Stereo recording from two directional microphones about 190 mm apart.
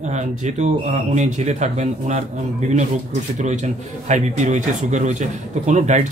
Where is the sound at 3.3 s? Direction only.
40° right (ahead or behind).